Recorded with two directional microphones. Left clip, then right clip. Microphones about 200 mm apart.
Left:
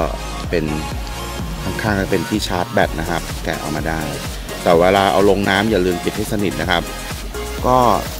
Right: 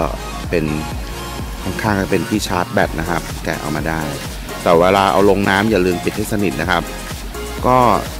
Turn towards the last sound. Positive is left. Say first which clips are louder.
# right 1 dB
turn(degrees=-15)  # may be behind; listen again after turning